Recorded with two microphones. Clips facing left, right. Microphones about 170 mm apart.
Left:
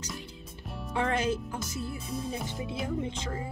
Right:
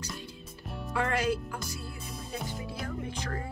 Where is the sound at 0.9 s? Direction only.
20° left (ahead or behind).